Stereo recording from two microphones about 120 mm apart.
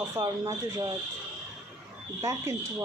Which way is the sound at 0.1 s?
25° right (ahead or behind).